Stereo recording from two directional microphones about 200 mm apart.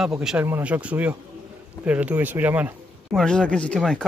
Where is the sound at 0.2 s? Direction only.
5° right (ahead or behind).